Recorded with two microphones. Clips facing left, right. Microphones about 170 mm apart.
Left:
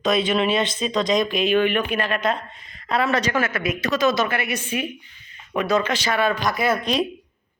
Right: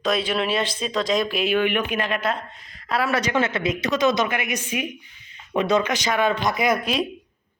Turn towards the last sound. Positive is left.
turn(degrees=-5)  # may be behind; listen again after turning